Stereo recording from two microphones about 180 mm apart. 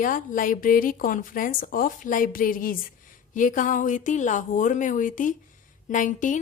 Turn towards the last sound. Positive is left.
turn(degrees=45)  # may be behind; listen again after turning